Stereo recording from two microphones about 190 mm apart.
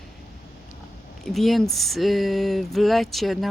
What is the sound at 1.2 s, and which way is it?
Speech, centre (ahead or behind).